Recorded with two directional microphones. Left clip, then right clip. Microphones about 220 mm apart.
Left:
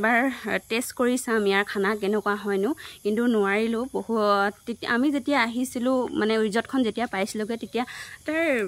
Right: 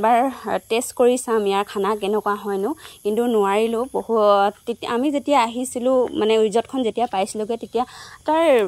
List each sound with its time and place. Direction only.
0.0 s speech: centre (ahead or behind); by 2.8 s 15° left (ahead or behind)
3.0 s speech: centre (ahead or behind)
8.3 s speech: 10° right (ahead or behind)